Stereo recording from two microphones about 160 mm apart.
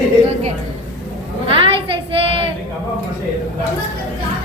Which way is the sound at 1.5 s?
35° right (ahead or behind).